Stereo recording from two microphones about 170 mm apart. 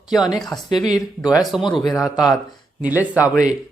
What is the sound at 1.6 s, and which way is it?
Speech, 25° left (ahead or behind).